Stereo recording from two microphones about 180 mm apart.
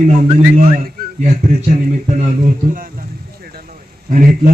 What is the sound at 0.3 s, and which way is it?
Speech, 40° right (ahead or behind).